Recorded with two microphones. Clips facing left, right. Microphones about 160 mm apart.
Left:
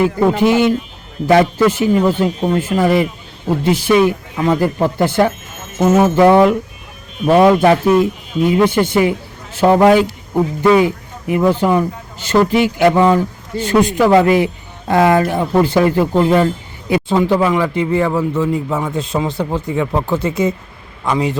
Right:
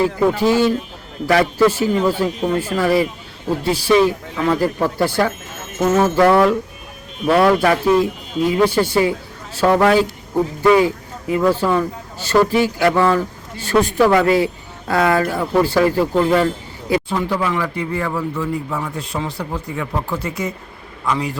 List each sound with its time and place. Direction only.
0.3 s speech: 20° left (ahead or behind)